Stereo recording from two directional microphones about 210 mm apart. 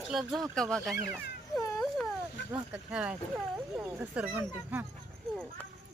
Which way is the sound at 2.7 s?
5° right (ahead or behind).